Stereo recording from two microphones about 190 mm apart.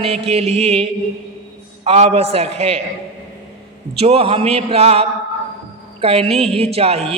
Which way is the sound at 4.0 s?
30° right (ahead or behind).